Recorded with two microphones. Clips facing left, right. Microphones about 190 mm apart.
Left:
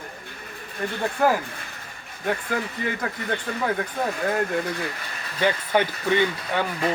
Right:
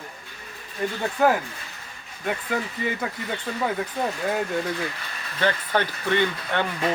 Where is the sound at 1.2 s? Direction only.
Centre (ahead or behind).